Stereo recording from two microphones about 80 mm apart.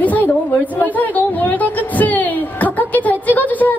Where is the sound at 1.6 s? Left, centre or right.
Left.